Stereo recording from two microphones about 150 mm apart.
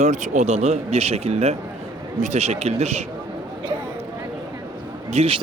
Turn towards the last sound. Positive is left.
turn(degrees=-40)  # may be behind; listen again after turning